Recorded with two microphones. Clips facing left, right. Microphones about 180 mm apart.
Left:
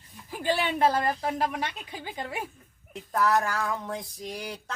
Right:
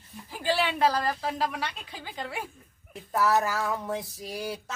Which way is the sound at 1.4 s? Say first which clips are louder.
Even; 50° left (ahead or behind).